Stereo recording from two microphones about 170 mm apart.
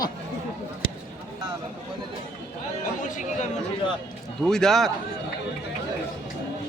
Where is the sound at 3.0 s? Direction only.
50° left (ahead or behind).